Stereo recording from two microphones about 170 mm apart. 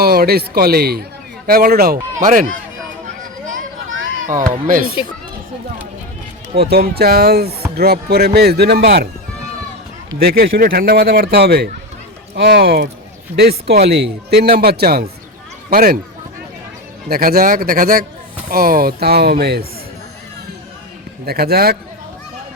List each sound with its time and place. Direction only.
0.0 s a man's voice: 65° right (ahead or behind)
4.6 s a man's voice: 55° right (ahead or behind)
6.6 s speech: 70° right (ahead or behind)
10.2 s a man's voice: 65° right (ahead or behind)
17.1 s a man's voice: 60° right (ahead or behind)
21.2 s a man's voice: 65° right (ahead or behind)